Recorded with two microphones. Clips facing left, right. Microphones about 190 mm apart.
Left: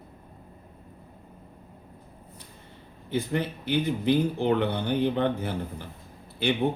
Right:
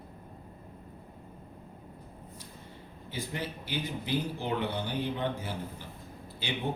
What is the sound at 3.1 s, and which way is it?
Speech, 60° left (ahead or behind).